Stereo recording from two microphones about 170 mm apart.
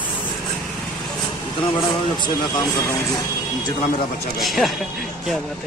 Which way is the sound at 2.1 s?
25° left (ahead or behind).